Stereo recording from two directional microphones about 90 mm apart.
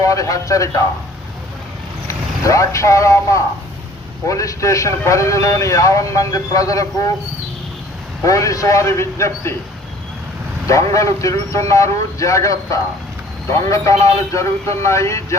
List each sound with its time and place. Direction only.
0.0 s a man's voice: 40° left (ahead or behind)
2.0 s a man's voice: 35° left (ahead or behind)
8.2 s a man's voice: 35° left (ahead or behind)
10.9 s a man's voice: 35° left (ahead or behind)